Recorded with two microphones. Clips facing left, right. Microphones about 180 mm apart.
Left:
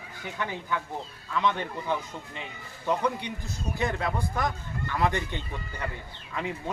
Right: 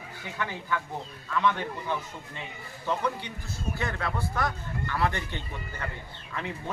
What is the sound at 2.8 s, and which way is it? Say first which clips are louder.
Speech: left 2 dB; 15° left (ahead or behind).